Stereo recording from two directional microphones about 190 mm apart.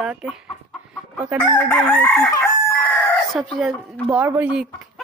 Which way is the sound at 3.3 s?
Centre (ahead or behind).